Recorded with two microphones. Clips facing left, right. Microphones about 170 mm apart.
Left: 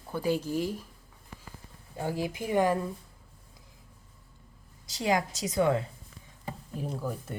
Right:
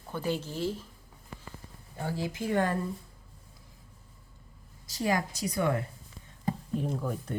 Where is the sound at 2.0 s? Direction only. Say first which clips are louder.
Left 1 dB; 15° left (ahead or behind).